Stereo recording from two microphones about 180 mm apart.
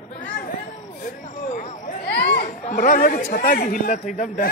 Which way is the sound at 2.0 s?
65° left (ahead or behind).